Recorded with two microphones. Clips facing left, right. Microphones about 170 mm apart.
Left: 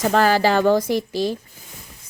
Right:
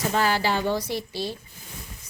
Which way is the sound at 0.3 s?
90° left.